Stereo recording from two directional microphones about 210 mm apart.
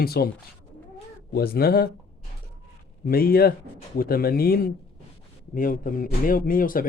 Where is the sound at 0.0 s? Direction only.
45° left (ahead or behind).